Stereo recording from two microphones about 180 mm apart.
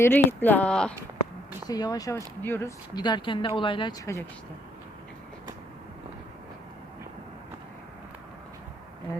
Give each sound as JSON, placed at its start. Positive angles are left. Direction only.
{"t": 0.0, "sound": "speech", "side_deg": 10}
{"t": 1.6, "sound": "speech", "side_deg": 20}